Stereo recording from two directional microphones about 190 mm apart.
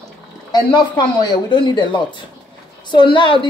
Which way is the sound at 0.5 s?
25° left (ahead or behind).